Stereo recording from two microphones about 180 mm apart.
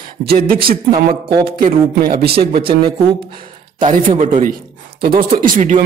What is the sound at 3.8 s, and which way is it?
Speech, 45° right (ahead or behind).